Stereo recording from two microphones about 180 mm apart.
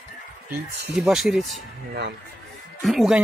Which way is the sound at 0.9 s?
5° right (ahead or behind).